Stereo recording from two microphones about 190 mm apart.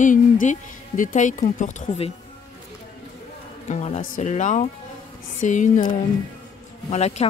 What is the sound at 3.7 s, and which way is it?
A woman's voice, 35° left (ahead or behind).